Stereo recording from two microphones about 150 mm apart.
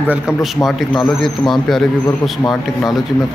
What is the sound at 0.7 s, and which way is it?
Speech, centre (ahead or behind).